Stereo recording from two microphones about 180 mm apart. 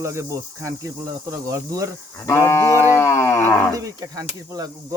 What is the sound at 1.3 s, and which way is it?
Speech, 20° right (ahead or behind).